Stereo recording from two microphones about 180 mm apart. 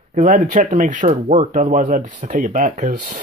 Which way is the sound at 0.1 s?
45° right (ahead or behind).